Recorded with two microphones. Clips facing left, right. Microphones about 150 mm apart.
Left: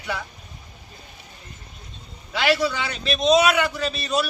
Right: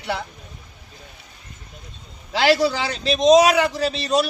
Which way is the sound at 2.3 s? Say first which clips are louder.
Right 4 dB; 35° right (ahead or behind).